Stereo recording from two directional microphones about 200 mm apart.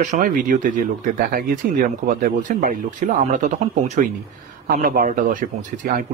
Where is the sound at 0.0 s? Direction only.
40° right (ahead or behind).